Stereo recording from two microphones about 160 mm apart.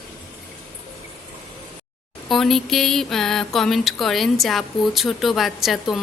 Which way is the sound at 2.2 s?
Centre (ahead or behind).